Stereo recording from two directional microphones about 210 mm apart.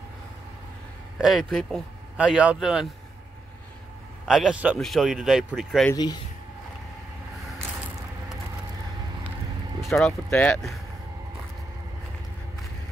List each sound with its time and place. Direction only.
1.1 s speech: centre (ahead or behind)
4.3 s speech: 5° right (ahead or behind)
5.9 s speech: 20° left (ahead or behind)
9.8 s speech: centre (ahead or behind)